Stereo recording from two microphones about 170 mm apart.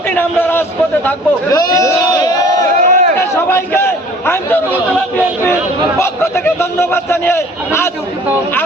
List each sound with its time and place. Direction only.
0.2 s a man's voice: 10° left (ahead or behind)
2.7 s a sound: 50° right (ahead or behind)
3.2 s chatter: 15° left (ahead or behind)
4.9 s a man's voice: 10° left (ahead or behind)